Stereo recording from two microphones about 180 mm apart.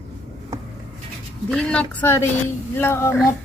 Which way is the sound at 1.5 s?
5° left (ahead or behind).